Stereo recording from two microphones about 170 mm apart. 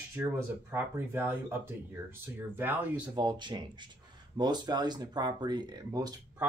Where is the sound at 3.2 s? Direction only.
25° right (ahead or behind).